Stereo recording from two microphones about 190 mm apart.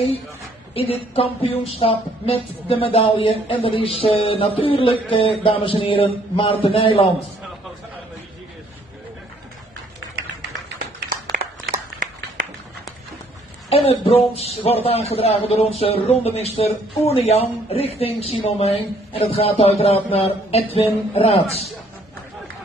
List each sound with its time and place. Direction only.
0.7 s a woman's voice: 30° left (ahead or behind)
11.3 s a sound: 45° right (ahead or behind)
13.7 s a woman's voice: 30° left (ahead or behind)